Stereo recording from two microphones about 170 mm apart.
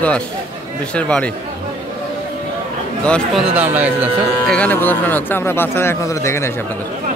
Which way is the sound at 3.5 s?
10° right (ahead or behind).